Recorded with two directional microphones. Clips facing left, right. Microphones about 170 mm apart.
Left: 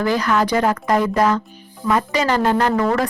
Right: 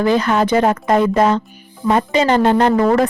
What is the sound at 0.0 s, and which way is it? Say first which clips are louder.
Speech: right 3 dB; 25° right (ahead or behind).